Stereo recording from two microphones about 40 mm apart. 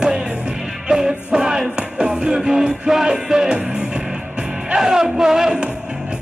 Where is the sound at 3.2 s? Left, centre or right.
Centre.